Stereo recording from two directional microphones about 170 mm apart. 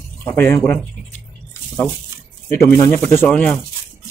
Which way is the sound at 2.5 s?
15° left (ahead or behind).